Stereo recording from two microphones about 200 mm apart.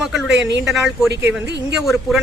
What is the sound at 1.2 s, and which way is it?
Speech, 60° right (ahead or behind).